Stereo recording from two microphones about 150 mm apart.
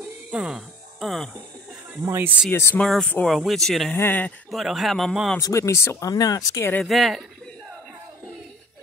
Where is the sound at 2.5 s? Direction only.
15° left (ahead or behind).